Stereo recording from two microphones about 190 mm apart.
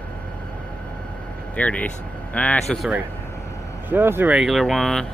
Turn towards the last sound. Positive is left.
turn(degrees=0)  # may be behind; listen again after turning